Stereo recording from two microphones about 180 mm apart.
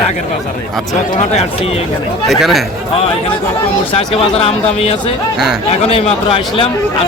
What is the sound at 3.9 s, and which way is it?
Speech, 35° left (ahead or behind).